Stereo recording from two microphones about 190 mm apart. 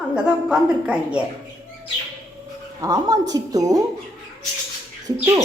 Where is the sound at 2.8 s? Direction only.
20° right (ahead or behind).